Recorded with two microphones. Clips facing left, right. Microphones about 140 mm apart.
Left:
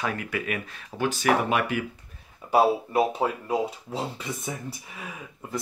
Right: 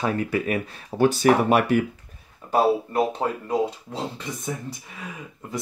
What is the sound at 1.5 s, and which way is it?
Speech, 45° right (ahead or behind).